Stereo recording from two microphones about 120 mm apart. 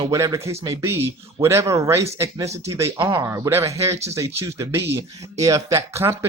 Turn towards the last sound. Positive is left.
turn(degrees=-25)  # may be behind; listen again after turning